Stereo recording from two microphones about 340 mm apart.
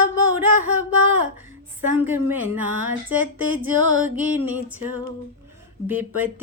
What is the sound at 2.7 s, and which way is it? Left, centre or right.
Speech, right.